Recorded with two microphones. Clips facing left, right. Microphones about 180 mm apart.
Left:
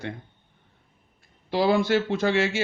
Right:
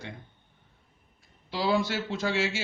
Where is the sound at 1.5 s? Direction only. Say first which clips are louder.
Left 6 dB; 55° left (ahead or behind).